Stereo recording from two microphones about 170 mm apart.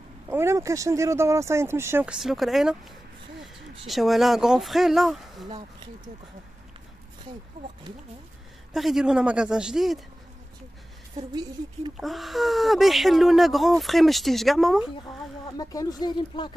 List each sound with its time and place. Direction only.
0.3 s speech: 15° right (ahead or behind)
2.1 s speech: centre (ahead or behind)
8.7 s speech: centre (ahead or behind)
12.0 s speech: centre (ahead or behind)
15.5 s speech: 20° left (ahead or behind)